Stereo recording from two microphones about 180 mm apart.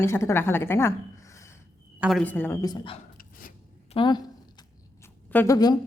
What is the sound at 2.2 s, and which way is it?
Speech, 10° left (ahead or behind).